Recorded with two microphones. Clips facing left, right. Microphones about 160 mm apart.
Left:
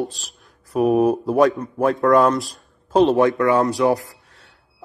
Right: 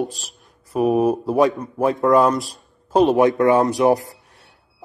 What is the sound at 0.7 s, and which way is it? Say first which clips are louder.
A man's voice: left 1 dB; centre (ahead or behind).